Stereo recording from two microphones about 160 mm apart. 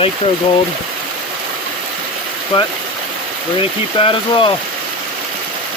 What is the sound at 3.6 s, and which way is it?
Speech, 35° left (ahead or behind).